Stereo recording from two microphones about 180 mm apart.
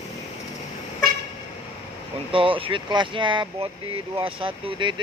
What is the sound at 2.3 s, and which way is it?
Speech, 30° right (ahead or behind).